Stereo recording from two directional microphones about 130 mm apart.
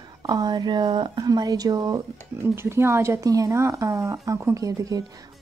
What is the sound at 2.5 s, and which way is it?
Speech, 20° right (ahead or behind).